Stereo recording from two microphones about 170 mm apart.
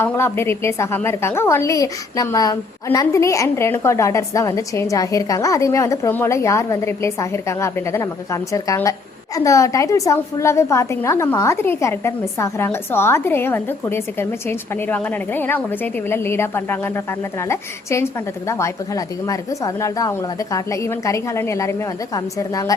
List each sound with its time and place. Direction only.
0.0 s a woman's voice: 15° left (ahead or behind)